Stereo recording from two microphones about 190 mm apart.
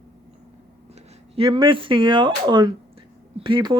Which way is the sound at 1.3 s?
25° right (ahead or behind).